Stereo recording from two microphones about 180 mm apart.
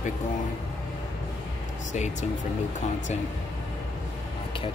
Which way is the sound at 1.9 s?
40° left (ahead or behind).